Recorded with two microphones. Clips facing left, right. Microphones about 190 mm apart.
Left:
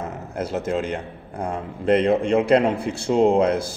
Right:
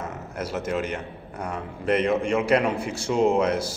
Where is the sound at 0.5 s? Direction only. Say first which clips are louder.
Left 3 dB; 30° left (ahead or behind).